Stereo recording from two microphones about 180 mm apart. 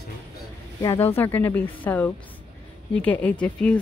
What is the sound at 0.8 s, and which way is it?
A woman's voice, 15° left (ahead or behind).